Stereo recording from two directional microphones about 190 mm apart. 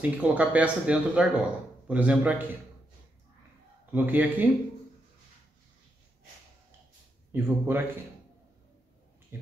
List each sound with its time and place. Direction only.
0.0 s speech: 5° right (ahead or behind)
3.9 s speech: 10° right (ahead or behind)
7.3 s speech: 10° right (ahead or behind)
9.3 s a sound: 10° right (ahead or behind)